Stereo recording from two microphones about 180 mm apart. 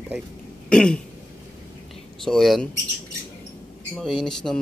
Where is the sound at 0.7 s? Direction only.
5° left (ahead or behind).